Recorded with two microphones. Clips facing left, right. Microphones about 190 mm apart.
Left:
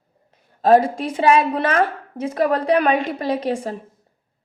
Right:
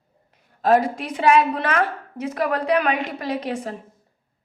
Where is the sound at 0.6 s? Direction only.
30° left (ahead or behind).